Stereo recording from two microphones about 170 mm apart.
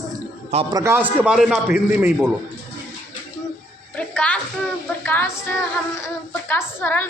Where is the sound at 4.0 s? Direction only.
5° left (ahead or behind).